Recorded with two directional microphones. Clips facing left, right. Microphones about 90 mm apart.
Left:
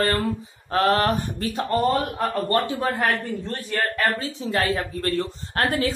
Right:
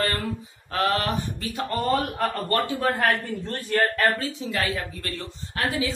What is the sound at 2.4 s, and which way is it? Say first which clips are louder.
Speech: left 2 dB; 25° left (ahead or behind).